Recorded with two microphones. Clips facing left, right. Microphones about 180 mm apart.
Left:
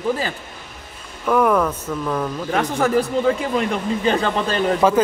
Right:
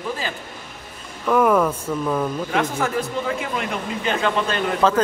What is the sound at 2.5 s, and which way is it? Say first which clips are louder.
Speech: left 6 dB; 35° left (ahead or behind).